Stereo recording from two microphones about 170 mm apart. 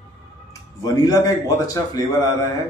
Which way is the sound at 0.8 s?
20° left (ahead or behind).